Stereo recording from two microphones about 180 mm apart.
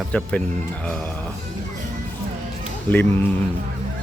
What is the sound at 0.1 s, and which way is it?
Speech, 5° left (ahead or behind).